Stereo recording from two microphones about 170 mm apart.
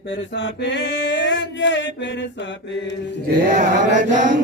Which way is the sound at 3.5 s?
50° right (ahead or behind).